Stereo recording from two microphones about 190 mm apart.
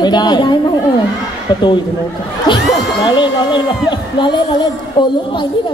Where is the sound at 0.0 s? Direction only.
20° left (ahead or behind).